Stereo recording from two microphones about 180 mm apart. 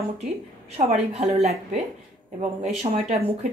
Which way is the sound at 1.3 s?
35° right (ahead or behind).